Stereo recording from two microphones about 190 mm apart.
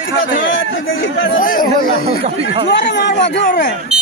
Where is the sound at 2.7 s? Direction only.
65° left (ahead or behind).